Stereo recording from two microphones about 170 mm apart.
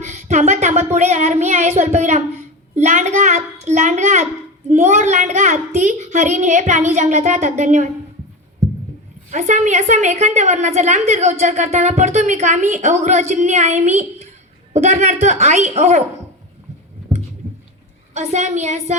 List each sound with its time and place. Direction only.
0.0 s a sound: 45° right (ahead or behind)
9.3 s a woman's voice: 45° right (ahead or behind)
18.1 s a woman's voice: 40° right (ahead or behind)